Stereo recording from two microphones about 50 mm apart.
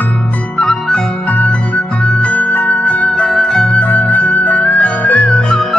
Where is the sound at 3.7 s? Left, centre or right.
Left.